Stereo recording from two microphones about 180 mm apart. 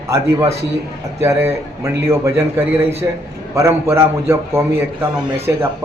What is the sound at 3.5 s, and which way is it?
A man's voice, 15° right (ahead or behind).